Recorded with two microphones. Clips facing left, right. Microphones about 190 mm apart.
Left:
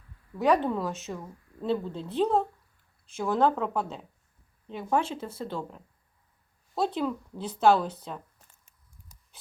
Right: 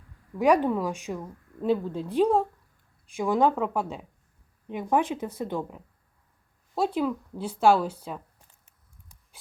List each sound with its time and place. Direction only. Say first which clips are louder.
0.3 s speech: right 3 dB; 10° right (ahead or behind)